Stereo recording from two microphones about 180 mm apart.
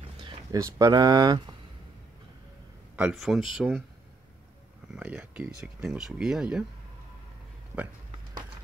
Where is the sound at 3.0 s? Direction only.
5° right (ahead or behind).